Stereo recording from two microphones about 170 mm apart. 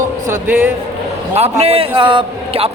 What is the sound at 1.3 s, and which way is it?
A man's voice, 35° right (ahead or behind).